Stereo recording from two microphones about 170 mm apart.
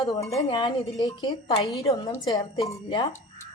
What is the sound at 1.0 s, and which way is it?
Speech, 25° left (ahead or behind).